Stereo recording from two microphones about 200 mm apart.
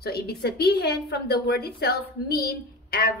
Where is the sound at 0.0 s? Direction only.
50° left (ahead or behind).